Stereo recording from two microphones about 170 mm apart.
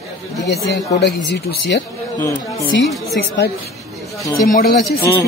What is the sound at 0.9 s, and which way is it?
Speech, 85° left.